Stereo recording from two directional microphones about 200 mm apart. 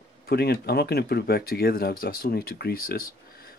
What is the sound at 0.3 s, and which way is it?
Speech, 50° left (ahead or behind).